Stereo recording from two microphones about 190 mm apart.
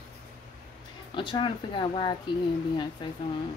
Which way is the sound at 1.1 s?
25° left (ahead or behind).